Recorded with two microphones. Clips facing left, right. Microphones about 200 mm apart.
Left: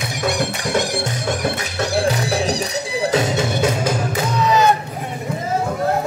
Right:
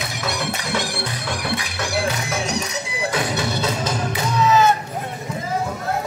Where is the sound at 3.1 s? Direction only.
25° left (ahead or behind).